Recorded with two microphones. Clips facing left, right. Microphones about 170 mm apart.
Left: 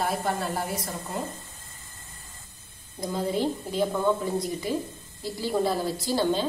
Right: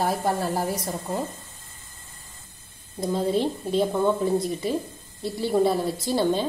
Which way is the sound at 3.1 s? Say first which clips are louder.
Right 3 dB; 25° right (ahead or behind).